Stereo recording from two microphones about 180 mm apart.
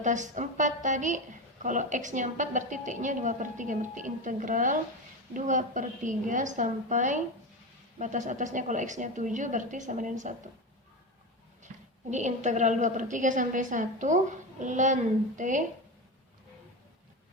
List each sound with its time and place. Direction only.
0.0 s a woman's voice: 45° right (ahead or behind)
11.7 s a sound: 40° right (ahead or behind)
12.1 s a woman's voice: 40° right (ahead or behind)